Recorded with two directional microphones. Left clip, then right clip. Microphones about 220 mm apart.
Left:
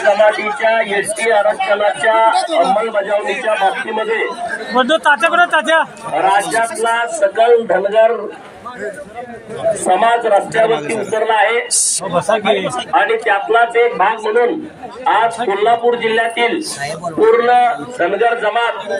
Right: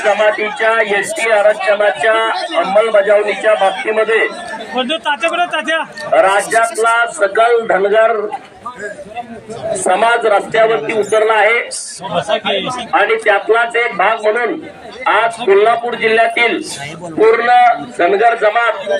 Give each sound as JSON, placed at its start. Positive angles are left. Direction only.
{"t": 0.1, "sound": "a man's voice", "side_deg": -40}
{"t": 2.3, "sound": "a man's voice", "side_deg": 50}
{"t": 2.7, "sound": "a man's voice", "side_deg": -40}
{"t": 4.7, "sound": "a man's voice", "side_deg": 35}
{"t": 6.1, "sound": "a man's voice", "side_deg": -35}
{"t": 9.8, "sound": "a man's voice", "side_deg": -35}
{"t": 12.9, "sound": "a man's voice", "side_deg": -35}